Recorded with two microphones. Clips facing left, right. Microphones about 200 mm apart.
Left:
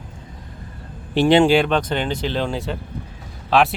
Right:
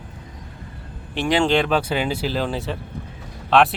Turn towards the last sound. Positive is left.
turn(degrees=0)  # may be behind; listen again after turning